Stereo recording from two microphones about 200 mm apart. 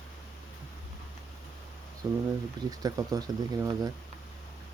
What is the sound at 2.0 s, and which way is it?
Speech, 15° right (ahead or behind).